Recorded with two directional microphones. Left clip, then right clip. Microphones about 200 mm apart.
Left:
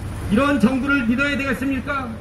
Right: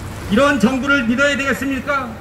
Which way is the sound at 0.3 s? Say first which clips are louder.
Right 4 dB; 30° right (ahead or behind).